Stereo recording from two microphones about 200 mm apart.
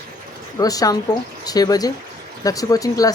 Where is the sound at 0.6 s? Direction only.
20° left (ahead or behind).